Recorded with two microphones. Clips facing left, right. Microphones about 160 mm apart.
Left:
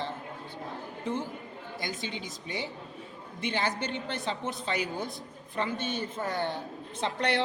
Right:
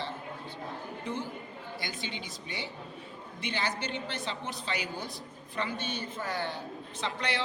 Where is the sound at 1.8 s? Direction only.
45° left (ahead or behind).